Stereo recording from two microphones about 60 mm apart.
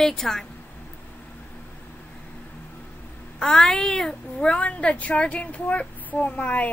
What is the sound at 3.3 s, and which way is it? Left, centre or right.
A child's voice, centre.